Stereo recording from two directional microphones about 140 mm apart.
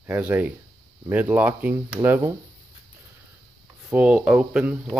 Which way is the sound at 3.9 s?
10° right (ahead or behind).